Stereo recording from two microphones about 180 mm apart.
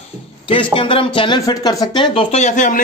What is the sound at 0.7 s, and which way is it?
Speech, 30° left (ahead or behind).